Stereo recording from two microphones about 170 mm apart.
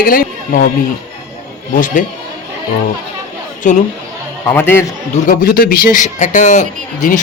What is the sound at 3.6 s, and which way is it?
Speech, 45° left (ahead or behind).